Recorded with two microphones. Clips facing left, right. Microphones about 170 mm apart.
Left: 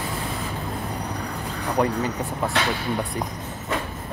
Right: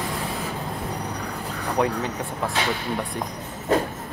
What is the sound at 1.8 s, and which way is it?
Speech, centre (ahead or behind).